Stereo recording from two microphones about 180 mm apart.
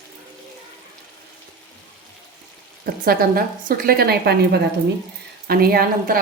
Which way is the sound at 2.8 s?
55° right (ahead or behind).